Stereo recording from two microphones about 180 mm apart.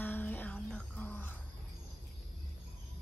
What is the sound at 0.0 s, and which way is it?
Music, 10° left (ahead or behind).